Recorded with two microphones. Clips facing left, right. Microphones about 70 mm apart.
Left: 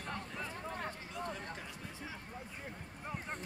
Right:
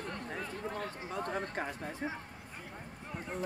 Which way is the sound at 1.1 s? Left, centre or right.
Right.